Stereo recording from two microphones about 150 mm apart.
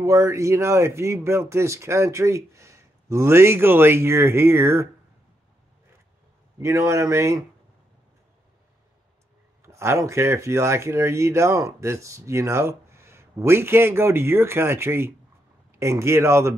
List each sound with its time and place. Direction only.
0.0 s speech: 20° right (ahead or behind)
6.6 s a man's voice: 20° right (ahead or behind)
9.6 s speech: 20° right (ahead or behind)